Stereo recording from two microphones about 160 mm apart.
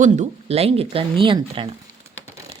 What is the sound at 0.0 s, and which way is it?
Speech, 45° right (ahead or behind).